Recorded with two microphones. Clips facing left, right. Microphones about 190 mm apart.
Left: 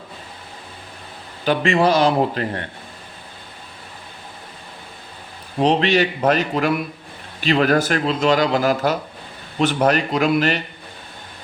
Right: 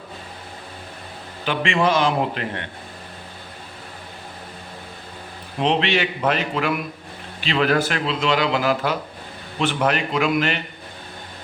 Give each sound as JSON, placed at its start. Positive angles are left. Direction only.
{"t": 1.5, "sound": "a man's voice", "side_deg": 40}
{"t": 5.5, "sound": "a man's voice", "side_deg": 40}